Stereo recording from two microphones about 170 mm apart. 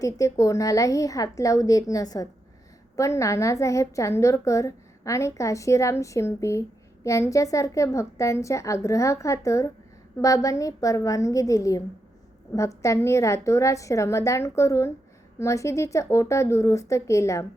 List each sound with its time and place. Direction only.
0.0 s a woman's voice: 20° left (ahead or behind)